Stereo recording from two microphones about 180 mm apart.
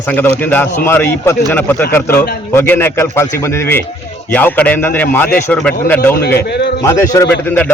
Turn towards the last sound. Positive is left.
turn(degrees=10)  # may be behind; listen again after turning